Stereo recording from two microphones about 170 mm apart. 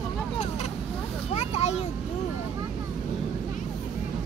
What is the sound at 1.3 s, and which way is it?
Vehicle, 40° left (ahead or behind).